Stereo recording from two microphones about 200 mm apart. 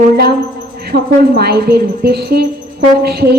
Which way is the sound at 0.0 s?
50° right (ahead or behind).